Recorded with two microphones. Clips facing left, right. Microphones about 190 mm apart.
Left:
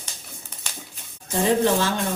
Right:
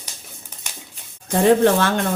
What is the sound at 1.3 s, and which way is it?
Speech, 60° right (ahead or behind).